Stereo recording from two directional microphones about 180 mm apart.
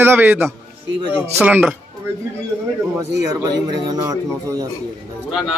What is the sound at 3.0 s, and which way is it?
A man's voice, 20° right (ahead or behind).